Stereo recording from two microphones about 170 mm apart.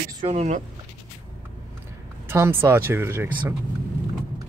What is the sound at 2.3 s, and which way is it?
Speech, 15° right (ahead or behind).